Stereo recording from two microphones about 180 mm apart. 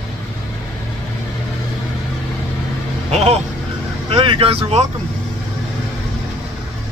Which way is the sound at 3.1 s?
35° right (ahead or behind).